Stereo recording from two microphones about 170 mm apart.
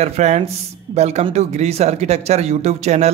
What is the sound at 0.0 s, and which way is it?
Speech, 40° right (ahead or behind).